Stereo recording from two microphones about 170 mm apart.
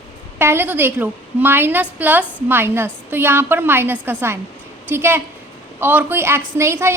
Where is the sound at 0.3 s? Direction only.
15° right (ahead or behind).